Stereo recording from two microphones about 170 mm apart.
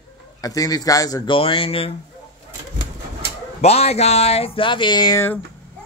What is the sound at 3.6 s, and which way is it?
Speech, 40° left (ahead or behind).